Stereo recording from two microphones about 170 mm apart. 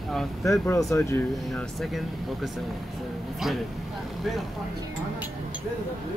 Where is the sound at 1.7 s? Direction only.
Centre (ahead or behind).